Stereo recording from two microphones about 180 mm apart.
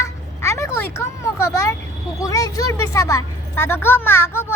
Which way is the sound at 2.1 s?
20° left (ahead or behind).